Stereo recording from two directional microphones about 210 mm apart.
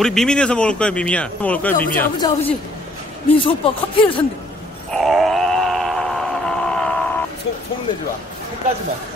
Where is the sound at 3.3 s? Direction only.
25° left (ahead or behind).